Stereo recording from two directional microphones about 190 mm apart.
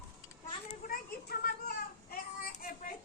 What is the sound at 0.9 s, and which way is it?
Child singing, 50° left (ahead or behind).